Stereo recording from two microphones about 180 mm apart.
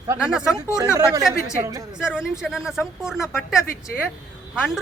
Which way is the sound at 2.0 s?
5° right (ahead or behind).